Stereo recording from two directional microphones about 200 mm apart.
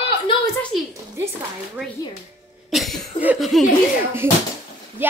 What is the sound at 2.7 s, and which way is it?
Cough, centre (ahead or behind).